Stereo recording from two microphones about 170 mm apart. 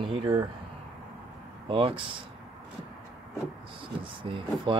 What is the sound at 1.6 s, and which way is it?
Speech, 30° right (ahead or behind).